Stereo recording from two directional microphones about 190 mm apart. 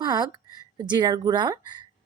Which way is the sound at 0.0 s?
20° right (ahead or behind).